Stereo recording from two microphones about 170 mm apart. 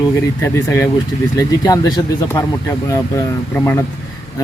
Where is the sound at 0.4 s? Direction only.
15° left (ahead or behind).